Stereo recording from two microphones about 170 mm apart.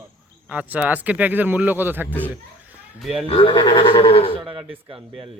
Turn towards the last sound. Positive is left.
turn(degrees=-30)  # may be behind; listen again after turning